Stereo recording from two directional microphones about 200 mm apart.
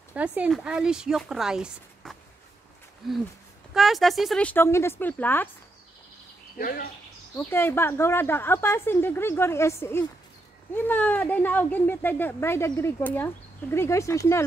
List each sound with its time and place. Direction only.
0.1 s speech: 5° right (ahead or behind); by 5.5 s 10° left (ahead or behind)
6.6 s speech: 45° left (ahead or behind)
7.3 s speech: 10° left (ahead or behind)